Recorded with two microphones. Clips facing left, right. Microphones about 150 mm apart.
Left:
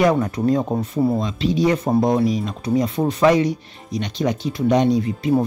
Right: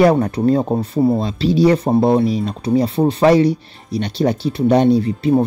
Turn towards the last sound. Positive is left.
turn(degrees=-30)  # may be behind; listen again after turning